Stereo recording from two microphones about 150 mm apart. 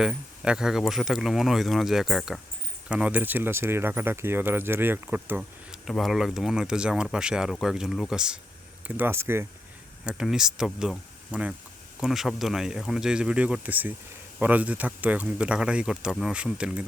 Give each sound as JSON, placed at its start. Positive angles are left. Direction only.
{"t": 0.0, "sound": "speech", "side_deg": -5}
{"t": 5.4, "sound": "speech", "side_deg": 0}
{"t": 9.0, "sound": "speech", "side_deg": -15}
{"t": 10.1, "sound": "speech", "side_deg": -5}